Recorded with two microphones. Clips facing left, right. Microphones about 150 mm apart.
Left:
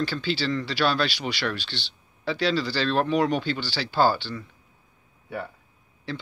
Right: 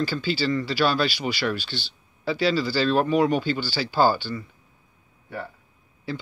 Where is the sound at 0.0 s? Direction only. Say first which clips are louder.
Right 2 dB; 5° right (ahead or behind).